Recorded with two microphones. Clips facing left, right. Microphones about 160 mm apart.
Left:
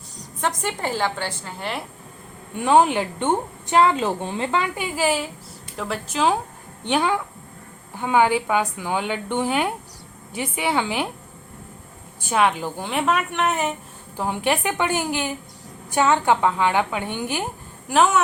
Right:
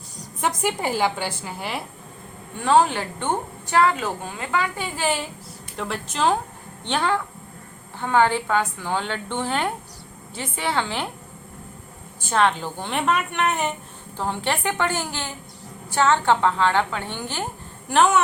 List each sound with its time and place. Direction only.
0.4 s a woman's voice: 10° right (ahead or behind)
2.6 s a woman's voice: 15° left (ahead or behind)
4.7 s a woman's voice: 10° left (ahead or behind)
12.2 s a woman's voice: 10° left (ahead or behind)
17.8 s a woman's voice: 5° left (ahead or behind)